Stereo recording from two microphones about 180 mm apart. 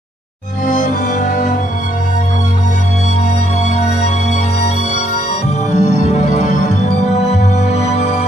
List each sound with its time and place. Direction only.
0.7 s music: 45° left (ahead or behind)
3.6 s music: 40° left (ahead or behind)
5.7 s music: 40° left (ahead or behind)